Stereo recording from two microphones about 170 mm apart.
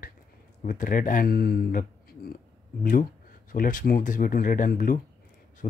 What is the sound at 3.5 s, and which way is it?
Speech, 50° left (ahead or behind).